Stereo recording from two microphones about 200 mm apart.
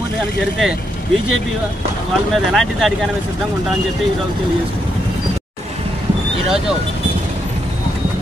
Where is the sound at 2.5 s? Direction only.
Centre (ahead or behind).